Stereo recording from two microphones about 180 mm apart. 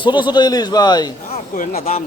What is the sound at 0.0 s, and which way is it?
Speech, 25° left (ahead or behind).